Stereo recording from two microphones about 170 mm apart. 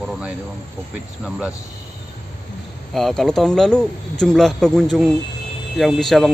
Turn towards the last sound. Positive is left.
turn(degrees=0)  # may be behind; listen again after turning